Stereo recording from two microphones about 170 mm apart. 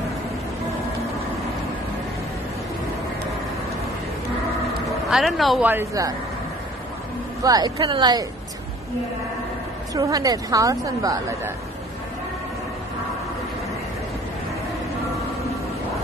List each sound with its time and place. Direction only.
5.1 s speech: centre (ahead or behind)
5.7 s speech: 15° right (ahead or behind)
7.4 s a woman's voice: 20° right (ahead or behind)
9.9 s a woman's voice: 20° right (ahead or behind)